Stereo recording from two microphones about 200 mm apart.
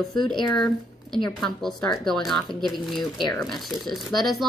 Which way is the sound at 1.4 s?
Centre (ahead or behind).